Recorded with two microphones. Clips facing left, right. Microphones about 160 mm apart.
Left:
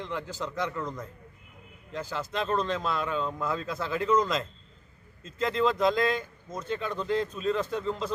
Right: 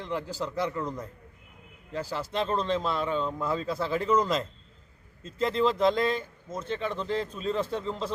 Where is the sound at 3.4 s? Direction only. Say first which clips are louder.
Right 2 dB; 30° right (ahead or behind).